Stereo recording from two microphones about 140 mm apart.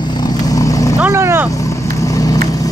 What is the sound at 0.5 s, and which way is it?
Vehicle, 25° left (ahead or behind).